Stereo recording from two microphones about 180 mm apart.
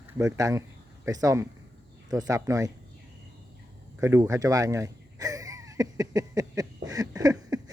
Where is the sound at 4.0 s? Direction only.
15° right (ahead or behind).